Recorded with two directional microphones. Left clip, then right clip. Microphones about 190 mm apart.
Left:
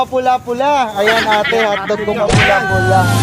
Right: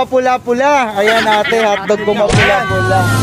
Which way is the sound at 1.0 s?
Centre (ahead or behind).